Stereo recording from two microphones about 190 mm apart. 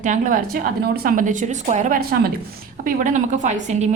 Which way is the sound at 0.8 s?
55° right (ahead or behind).